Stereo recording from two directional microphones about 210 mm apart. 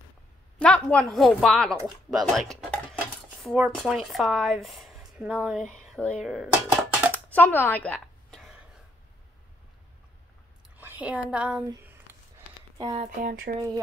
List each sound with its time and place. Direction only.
0.6 s speech: 5° left (ahead or behind)
7.2 s a sound: 10° left (ahead or behind)
10.8 s a woman's voice: 10° right (ahead or behind)
11.6 s a sound: 10° right (ahead or behind)
12.7 s speech: 20° right (ahead or behind)
13.0 s speech: 40° right (ahead or behind)